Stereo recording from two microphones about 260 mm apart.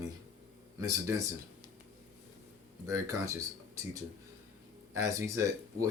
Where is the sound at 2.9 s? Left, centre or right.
Centre.